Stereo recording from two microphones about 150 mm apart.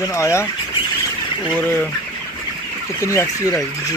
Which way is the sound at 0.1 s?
20° left (ahead or behind).